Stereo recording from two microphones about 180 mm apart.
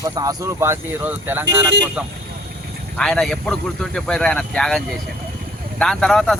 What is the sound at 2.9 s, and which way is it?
Speech, 5° left (ahead or behind).